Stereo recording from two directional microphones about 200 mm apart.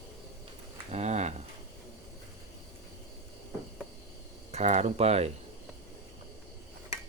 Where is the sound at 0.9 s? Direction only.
35° right (ahead or behind).